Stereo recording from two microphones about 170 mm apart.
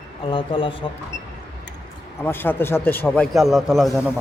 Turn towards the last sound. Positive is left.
turn(degrees=0)  # may be behind; listen again after turning